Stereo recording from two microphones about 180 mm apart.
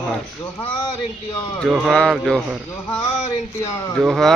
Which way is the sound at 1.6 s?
Centre (ahead or behind).